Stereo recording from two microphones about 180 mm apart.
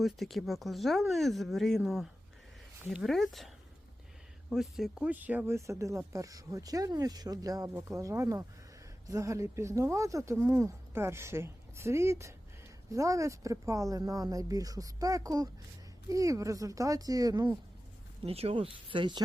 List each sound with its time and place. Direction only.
0.0 s speech: centre (ahead or behind); by 17.6 s 20° right (ahead or behind)
18.2 s speech: 35° right (ahead or behind)